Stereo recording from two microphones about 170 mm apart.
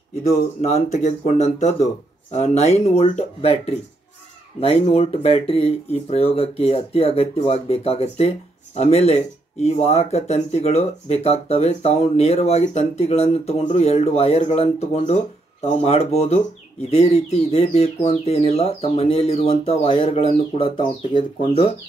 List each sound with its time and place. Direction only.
0.6 s speech: 40° left (ahead or behind)